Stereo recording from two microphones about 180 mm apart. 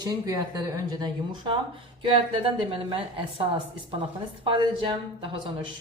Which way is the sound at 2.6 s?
30° right (ahead or behind).